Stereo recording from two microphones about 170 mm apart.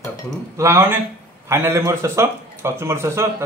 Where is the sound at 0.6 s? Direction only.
15° right (ahead or behind).